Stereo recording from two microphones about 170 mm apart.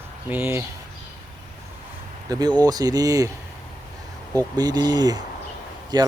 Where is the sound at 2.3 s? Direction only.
25° right (ahead or behind).